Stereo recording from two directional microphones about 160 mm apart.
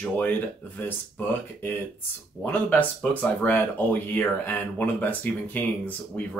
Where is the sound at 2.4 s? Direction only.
10° left (ahead or behind).